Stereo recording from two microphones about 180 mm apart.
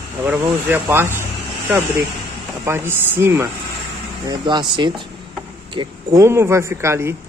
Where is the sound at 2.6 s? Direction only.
10° right (ahead or behind).